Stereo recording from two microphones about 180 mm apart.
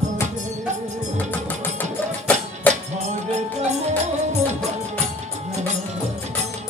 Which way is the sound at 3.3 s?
40° right (ahead or behind).